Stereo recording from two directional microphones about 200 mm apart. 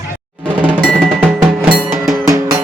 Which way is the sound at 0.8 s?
Centre (ahead or behind).